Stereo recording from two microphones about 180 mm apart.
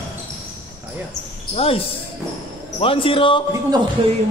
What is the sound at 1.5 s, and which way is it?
Speech, 35° left (ahead or behind).